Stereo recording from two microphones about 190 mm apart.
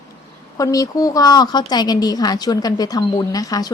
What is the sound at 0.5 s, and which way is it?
A woman's voice, 20° left (ahead or behind).